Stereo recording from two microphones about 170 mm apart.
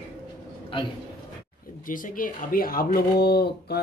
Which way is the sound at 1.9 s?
55° left (ahead or behind).